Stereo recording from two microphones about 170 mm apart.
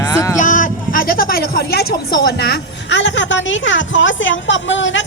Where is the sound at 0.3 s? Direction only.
50° left (ahead or behind).